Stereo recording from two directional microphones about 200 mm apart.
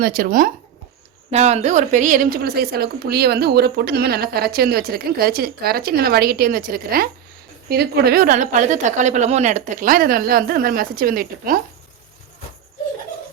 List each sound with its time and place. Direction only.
0.0 s a woman's voice: 45° right (ahead or behind)
1.3 s a woman's voice: 35° right (ahead or behind)